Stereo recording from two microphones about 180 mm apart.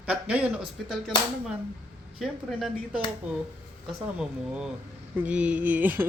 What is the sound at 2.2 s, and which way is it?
Speech, 5° right (ahead or behind).